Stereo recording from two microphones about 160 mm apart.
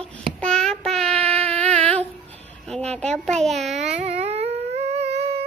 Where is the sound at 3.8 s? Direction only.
45° right (ahead or behind).